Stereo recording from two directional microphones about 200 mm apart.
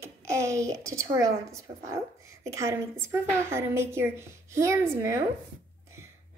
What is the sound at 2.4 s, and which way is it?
A woman's voice, 15° right (ahead or behind).